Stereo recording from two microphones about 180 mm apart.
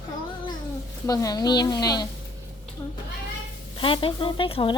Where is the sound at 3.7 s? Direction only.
30° left (ahead or behind).